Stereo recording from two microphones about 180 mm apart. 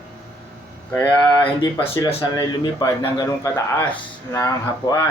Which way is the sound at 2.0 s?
25° left (ahead or behind).